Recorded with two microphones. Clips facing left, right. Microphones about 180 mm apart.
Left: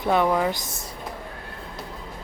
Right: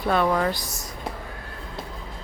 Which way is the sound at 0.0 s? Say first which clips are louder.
Left 1 dB; 15° left (ahead or behind).